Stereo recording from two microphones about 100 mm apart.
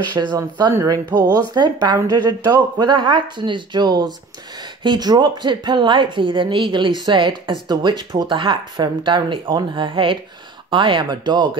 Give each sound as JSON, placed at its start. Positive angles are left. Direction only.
{"t": 0.1, "sound": "a woman's voice", "side_deg": -45}